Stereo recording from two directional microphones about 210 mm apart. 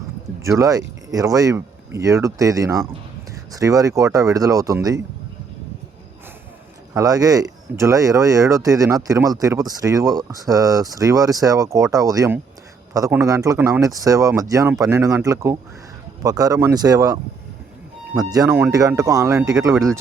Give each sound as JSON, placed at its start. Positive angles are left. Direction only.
{"t": 0.4, "sound": "speech", "side_deg": -15}
{"t": 6.9, "sound": "speech", "side_deg": -15}
{"t": 18.3, "sound": "speech", "side_deg": -15}